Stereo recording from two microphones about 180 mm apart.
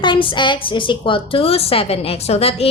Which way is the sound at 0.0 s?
25° left (ahead or behind).